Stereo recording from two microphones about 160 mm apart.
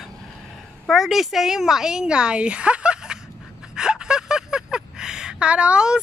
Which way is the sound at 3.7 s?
5° right (ahead or behind).